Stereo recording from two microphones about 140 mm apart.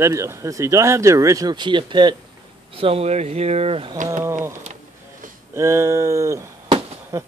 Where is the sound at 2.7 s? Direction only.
45° right (ahead or behind).